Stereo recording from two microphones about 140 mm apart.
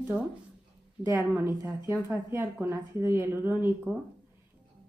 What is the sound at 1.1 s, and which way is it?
A woman's voice, 20° right (ahead or behind).